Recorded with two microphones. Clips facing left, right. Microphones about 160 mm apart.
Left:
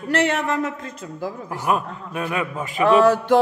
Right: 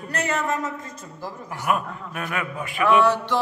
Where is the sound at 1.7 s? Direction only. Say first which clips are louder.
Left 2 dB; 25° left (ahead or behind).